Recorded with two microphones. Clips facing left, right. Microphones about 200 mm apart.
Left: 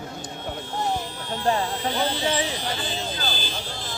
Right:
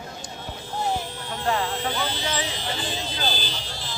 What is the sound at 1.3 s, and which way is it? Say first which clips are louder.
Speech: left 2 dB; 30° left (ahead or behind).